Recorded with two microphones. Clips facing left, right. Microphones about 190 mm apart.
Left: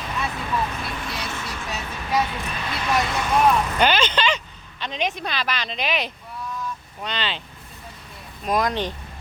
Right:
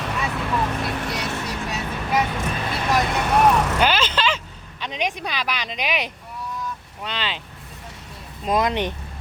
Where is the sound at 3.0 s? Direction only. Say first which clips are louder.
Right 1 dB; 60° right (ahead or behind).